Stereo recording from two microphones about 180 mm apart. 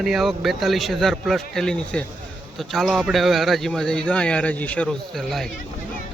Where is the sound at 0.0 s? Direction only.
Centre (ahead or behind).